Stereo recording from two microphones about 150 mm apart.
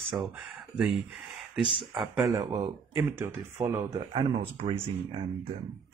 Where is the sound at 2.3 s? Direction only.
20° right (ahead or behind).